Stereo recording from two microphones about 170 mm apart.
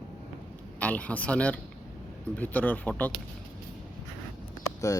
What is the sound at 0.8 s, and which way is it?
Speech, 10° left (ahead or behind).